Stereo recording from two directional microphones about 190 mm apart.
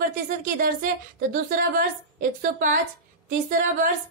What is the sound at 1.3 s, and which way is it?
A woman's voice, 50° right (ahead or behind).